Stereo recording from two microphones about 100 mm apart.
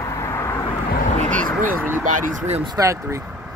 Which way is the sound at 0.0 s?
30° left (ahead or behind).